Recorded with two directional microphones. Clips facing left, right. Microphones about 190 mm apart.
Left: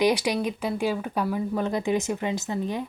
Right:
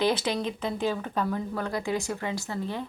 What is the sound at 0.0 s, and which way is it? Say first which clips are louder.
Speech: left 3 dB; 15° left (ahead or behind).